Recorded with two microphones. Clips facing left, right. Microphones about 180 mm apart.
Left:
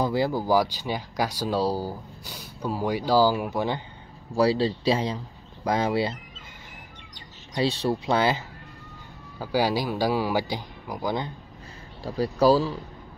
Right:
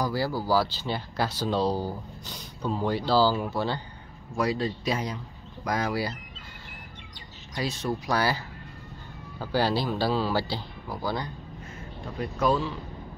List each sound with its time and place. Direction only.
0.0 s speech: 20° left (ahead or behind)
4.3 s a man's voice: 30° left (ahead or behind)
7.5 s a man's voice: 30° left (ahead or behind)
12.0 s speech: 35° left (ahead or behind)